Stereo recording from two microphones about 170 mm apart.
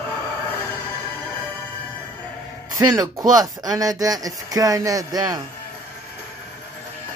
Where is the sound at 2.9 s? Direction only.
20° right (ahead or behind).